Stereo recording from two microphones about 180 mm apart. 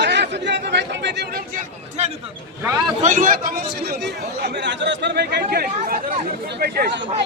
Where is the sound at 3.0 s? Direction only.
45° right (ahead or behind).